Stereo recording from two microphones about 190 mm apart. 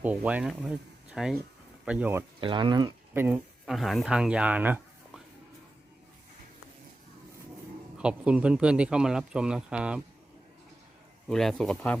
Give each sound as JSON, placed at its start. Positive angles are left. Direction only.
{"t": 0.0, "sound": "speech", "side_deg": -5}
{"t": 2.4, "sound": "speech", "side_deg": -25}
{"t": 3.2, "sound": "speech", "side_deg": -5}
{"t": 7.9, "sound": "speech", "side_deg": -5}
{"t": 11.3, "sound": "speech", "side_deg": 0}